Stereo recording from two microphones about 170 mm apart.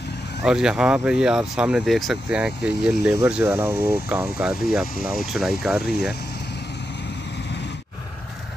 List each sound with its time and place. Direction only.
0.4 s speech: 5° right (ahead or behind)